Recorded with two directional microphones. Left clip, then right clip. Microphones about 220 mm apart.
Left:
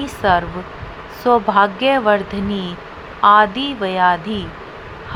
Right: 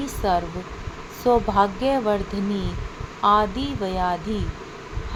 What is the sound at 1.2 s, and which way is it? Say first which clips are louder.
Speech: left 5 dB; 30° left (ahead or behind).